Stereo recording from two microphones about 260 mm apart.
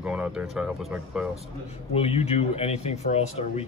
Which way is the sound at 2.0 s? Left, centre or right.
Left.